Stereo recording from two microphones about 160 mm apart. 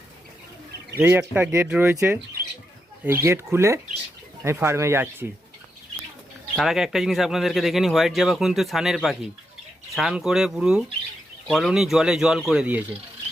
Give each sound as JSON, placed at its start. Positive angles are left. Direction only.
{"t": 0.9, "sound": "speech", "side_deg": -10}
{"t": 6.6, "sound": "a man's voice", "side_deg": 0}